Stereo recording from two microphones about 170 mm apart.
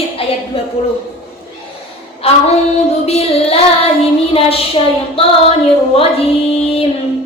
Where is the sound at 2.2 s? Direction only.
35° left (ahead or behind).